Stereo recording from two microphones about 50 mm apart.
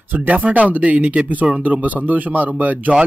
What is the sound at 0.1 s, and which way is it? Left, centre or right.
Speech, right.